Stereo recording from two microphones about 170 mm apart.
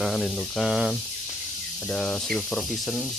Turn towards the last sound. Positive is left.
turn(degrees=0)  # may be behind; listen again after turning